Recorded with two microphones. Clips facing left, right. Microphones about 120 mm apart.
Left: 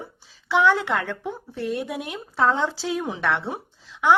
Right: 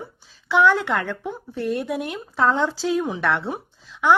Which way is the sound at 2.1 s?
10° left (ahead or behind).